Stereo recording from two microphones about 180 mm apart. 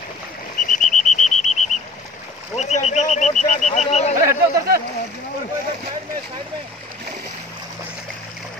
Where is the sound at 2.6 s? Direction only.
40° left (ahead or behind).